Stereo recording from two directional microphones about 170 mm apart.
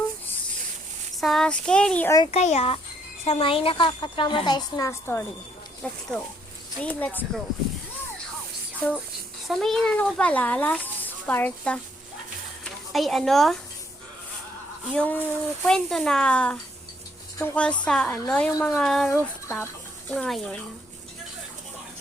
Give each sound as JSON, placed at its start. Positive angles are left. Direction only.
{"t": 1.1, "sound": "child singing", "side_deg": 0}
{"t": 2.3, "sound": "a child's voice", "side_deg": 40}
{"t": 9.5, "sound": "a child's voice", "side_deg": 0}
{"t": 12.9, "sound": "speech", "side_deg": 0}
{"t": 14.9, "sound": "a child's voice", "side_deg": 10}
{"t": 20.1, "sound": "speech", "side_deg": 5}